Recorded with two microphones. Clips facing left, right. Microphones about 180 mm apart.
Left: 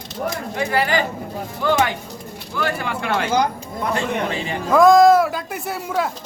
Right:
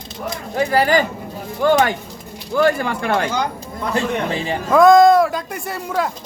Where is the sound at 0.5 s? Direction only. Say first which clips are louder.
Right 5 dB; 40° right (ahead or behind).